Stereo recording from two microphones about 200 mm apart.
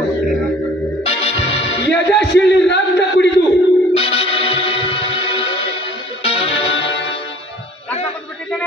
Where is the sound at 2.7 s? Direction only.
60° left (ahead or behind).